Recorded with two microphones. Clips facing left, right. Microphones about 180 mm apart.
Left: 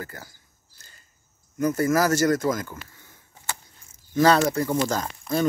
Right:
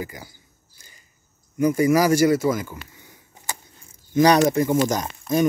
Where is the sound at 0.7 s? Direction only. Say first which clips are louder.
Right 1 dB; 10° right (ahead or behind).